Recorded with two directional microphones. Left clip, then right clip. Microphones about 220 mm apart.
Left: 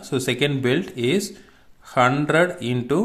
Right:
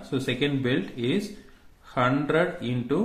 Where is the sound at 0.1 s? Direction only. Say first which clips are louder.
Left 5 dB; 45° left (ahead or behind).